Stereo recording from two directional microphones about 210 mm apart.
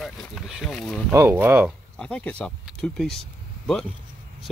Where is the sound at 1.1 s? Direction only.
10° right (ahead or behind).